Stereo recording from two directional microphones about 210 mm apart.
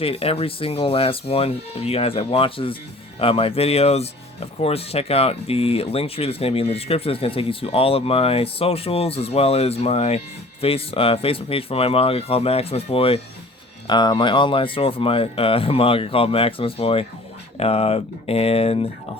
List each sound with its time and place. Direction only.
0.0 s speech: 25° left (ahead or behind)